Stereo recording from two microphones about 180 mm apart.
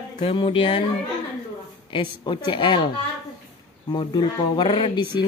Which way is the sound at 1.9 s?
25° left (ahead or behind).